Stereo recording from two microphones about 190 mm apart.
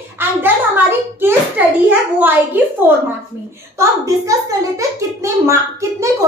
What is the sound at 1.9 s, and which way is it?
Speech, 10° right (ahead or behind).